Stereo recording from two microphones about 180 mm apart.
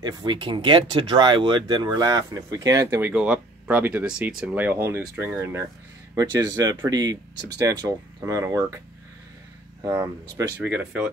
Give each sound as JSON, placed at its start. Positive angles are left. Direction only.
{"t": 0.0, "sound": "speech", "side_deg": -25}
{"t": 9.8, "sound": "speech", "side_deg": -15}